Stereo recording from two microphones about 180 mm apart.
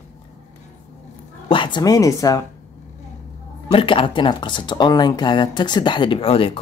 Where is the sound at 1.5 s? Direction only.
25° left (ahead or behind).